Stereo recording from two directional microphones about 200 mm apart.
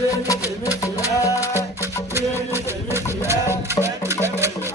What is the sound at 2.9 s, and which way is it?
Music, 15° right (ahead or behind).